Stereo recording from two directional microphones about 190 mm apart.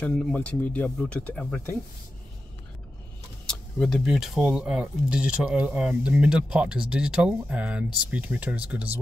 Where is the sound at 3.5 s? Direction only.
5° left (ahead or behind).